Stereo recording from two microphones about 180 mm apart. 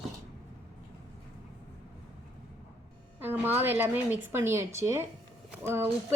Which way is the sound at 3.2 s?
10° right (ahead or behind).